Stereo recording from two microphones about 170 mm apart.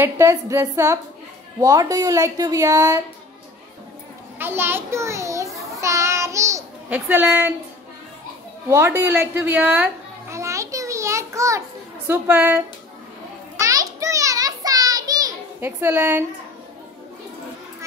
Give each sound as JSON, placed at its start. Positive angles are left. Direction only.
{"t": 0.0, "sound": "speech", "side_deg": -15}
{"t": 4.4, "sound": "speech", "side_deg": -15}
{"t": 5.8, "sound": "child singing", "side_deg": -15}
{"t": 8.6, "sound": "speech", "side_deg": -15}
{"t": 10.3, "sound": "a sound", "side_deg": -15}
{"t": 12.1, "sound": "speech", "side_deg": -10}
{"t": 13.6, "sound": "a sound", "side_deg": -20}